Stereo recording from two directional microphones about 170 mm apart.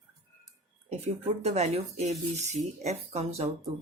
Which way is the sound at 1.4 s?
40° right (ahead or behind).